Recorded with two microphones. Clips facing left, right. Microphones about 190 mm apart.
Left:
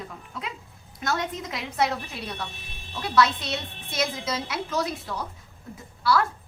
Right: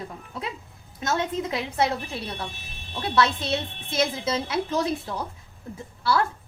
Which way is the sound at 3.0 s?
25° right (ahead or behind).